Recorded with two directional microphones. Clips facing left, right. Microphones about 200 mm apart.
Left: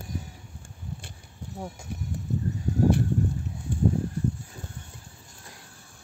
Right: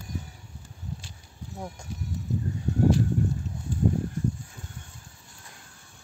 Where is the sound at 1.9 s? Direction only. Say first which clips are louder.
Left 1 dB; 60° left (ahead or behind).